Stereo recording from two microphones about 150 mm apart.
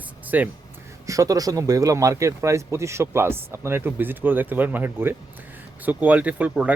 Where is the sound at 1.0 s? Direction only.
20° right (ahead or behind).